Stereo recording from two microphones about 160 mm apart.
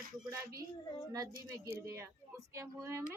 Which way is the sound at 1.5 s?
20° right (ahead or behind).